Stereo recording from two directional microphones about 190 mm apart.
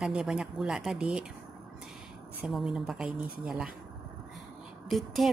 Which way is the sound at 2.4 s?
Centre (ahead or behind).